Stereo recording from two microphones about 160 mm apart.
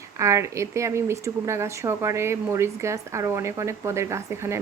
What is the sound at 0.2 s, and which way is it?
A woman's voice, 20° right (ahead or behind).